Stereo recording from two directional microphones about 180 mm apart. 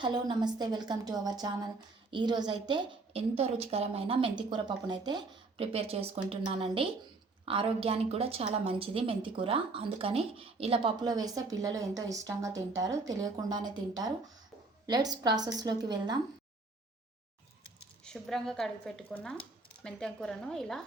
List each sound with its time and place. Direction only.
0.0 s a woman's voice: 25° right (ahead or behind)
18.0 s a woman's voice: 5° left (ahead or behind)